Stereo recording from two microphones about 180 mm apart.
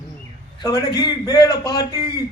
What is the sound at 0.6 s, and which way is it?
A man's voice, 20° left (ahead or behind).